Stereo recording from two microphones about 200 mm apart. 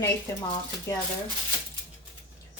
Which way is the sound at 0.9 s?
15° left (ahead or behind).